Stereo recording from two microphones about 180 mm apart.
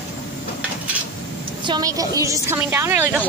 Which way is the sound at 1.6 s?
20° right (ahead or behind).